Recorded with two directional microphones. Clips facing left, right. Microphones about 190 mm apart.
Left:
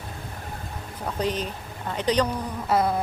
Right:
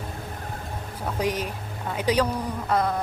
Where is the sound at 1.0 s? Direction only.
10° right (ahead or behind).